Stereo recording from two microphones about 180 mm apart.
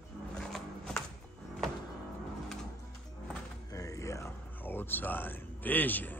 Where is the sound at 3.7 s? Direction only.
20° left (ahead or behind).